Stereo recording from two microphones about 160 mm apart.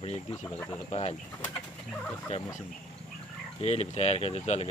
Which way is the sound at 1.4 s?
5° left (ahead or behind).